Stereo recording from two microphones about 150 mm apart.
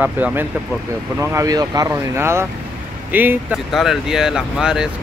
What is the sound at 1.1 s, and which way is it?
Speech, 20° right (ahead or behind).